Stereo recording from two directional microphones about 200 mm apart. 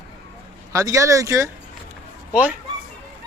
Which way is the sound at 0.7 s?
15° right (ahead or behind).